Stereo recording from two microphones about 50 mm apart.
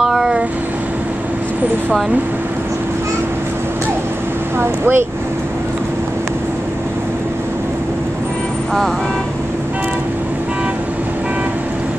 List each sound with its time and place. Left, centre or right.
0.0 s vehicle: centre
4.6 s speech: right